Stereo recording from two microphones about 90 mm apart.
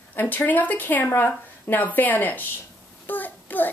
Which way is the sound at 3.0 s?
20° left (ahead or behind).